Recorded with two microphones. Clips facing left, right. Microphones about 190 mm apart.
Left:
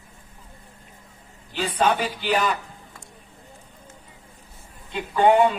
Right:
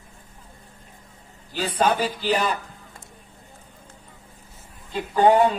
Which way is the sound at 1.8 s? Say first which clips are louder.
Right 1 dB; 35° right (ahead or behind).